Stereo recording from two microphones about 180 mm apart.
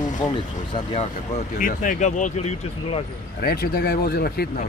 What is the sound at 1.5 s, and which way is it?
Speech, 45° left (ahead or behind).